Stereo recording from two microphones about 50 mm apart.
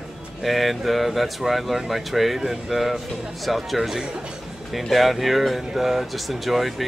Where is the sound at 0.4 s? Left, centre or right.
Centre.